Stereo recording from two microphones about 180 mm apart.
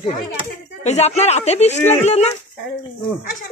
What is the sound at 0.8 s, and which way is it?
A woman's voice, 35° left (ahead or behind).